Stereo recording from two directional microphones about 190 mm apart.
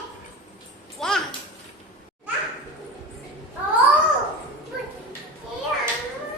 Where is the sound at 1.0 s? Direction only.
Centre (ahead or behind).